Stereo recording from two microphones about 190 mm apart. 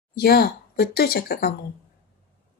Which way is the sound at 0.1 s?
55° left (ahead or behind).